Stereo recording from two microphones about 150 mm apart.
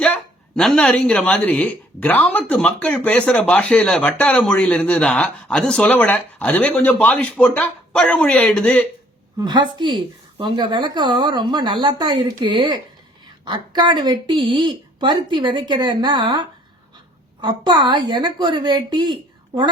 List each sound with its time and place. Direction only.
0.0 s speech: 5° left (ahead or behind)
9.4 s speech: 30° right (ahead or behind)